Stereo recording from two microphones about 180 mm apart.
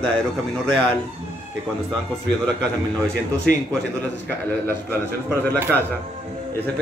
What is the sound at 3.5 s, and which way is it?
Speech, 65° right (ahead or behind).